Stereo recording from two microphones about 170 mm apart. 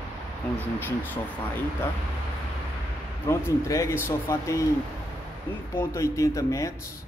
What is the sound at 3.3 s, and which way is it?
Speech, 20° left (ahead or behind).